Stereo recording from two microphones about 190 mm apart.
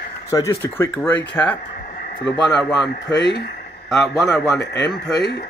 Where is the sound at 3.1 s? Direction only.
65° left (ahead or behind).